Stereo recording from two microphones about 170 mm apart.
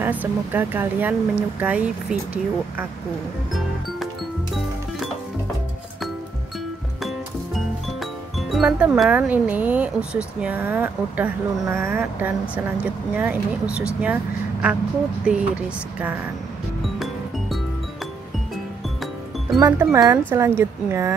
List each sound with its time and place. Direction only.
0.0 s speech: 10° right (ahead or behind)
7.5 s speech: centre (ahead or behind)
19.6 s speech: 20° right (ahead or behind)